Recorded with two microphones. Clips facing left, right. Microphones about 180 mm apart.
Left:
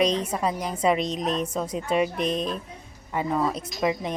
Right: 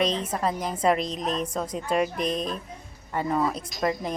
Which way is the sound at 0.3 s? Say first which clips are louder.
Even; centre (ahead or behind).